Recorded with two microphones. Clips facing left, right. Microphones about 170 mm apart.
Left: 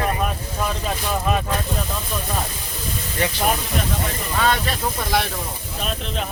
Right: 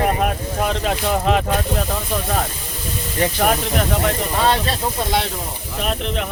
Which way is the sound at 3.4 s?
65° right (ahead or behind).